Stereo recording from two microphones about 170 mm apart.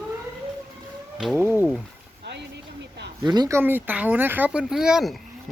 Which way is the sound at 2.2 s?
90° right.